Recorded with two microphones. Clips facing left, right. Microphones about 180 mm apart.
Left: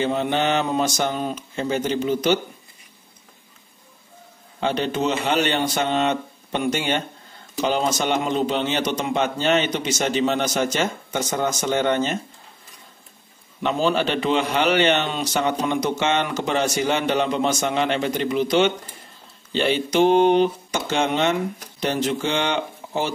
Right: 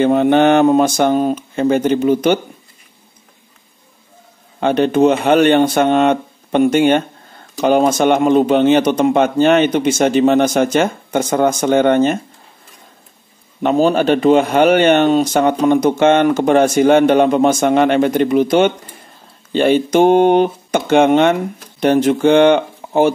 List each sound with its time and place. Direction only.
0.0 s speech: 55° right (ahead or behind)
4.6 s a man's voice: 55° right (ahead or behind)
13.6 s a man's voice: 45° right (ahead or behind)